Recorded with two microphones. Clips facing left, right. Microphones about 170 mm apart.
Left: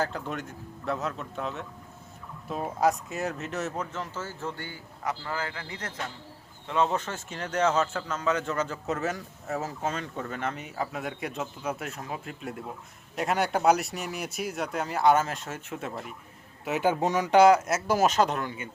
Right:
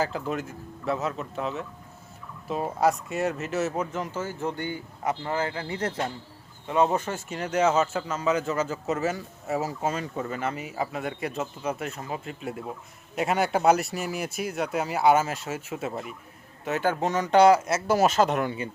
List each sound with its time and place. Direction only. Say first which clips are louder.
0.0 s speech: right 3 dB; 5° right (ahead or behind); by 6.1 s 30° right (ahead or behind)
6.7 s speech: right 3 dB; 10° right (ahead or behind)
16.6 s speech: even; 10° left (ahead or behind); by 18.4 s 5° right (ahead or behind)